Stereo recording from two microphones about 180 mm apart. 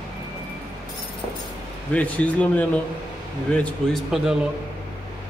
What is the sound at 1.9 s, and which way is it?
A man's voice, 10° left (ahead or behind).